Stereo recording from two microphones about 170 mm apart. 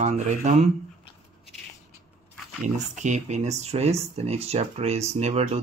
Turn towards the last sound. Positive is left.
turn(degrees=-40)  # may be behind; listen again after turning